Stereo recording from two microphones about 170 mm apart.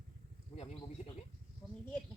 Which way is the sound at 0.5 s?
35° left (ahead or behind).